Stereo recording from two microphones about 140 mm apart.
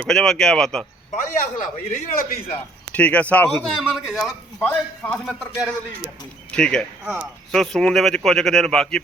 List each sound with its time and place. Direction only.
0.0 s speech: 5° left (ahead or behind)
1.2 s a man's voice: 70° left (ahead or behind); by 2.4 s 85° left
2.9 s speech: 10° left (ahead or behind)
3.8 s speech: centre (ahead or behind)
4.6 s speech: 15° left (ahead or behind)
6.5 s speech: 5° left (ahead or behind)
7.0 s speech: 15° right (ahead or behind)
7.5 s speech: 5° left (ahead or behind)